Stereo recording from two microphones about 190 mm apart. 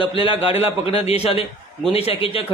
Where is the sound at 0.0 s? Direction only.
25° left (ahead or behind).